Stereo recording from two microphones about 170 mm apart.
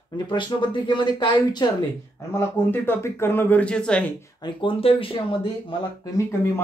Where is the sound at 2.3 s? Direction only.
10° left (ahead or behind).